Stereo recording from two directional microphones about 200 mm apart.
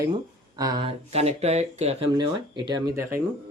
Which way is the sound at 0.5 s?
20° right (ahead or behind).